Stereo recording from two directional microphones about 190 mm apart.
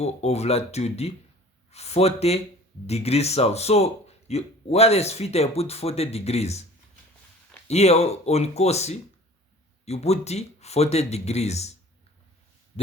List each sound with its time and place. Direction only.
0.0 s speech: 35° left (ahead or behind)
7.7 s speech: 35° left (ahead or behind)